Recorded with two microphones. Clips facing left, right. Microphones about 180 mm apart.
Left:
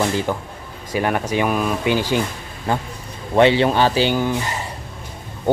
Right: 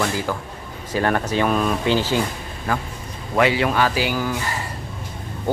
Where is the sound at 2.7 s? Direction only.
25° left (ahead or behind).